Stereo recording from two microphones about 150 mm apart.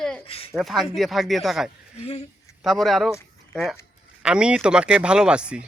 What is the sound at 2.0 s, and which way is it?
Speech, 45° left (ahead or behind).